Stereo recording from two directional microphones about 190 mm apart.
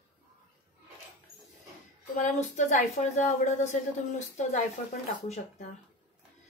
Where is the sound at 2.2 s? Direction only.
40° left (ahead or behind).